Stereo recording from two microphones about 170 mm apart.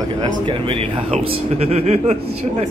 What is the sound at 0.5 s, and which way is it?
Speech, 30° right (ahead or behind).